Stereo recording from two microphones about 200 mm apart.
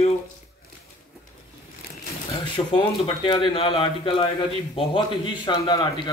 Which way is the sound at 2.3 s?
25° left (ahead or behind).